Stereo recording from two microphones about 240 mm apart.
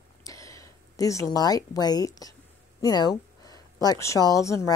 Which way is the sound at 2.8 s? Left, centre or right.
Centre.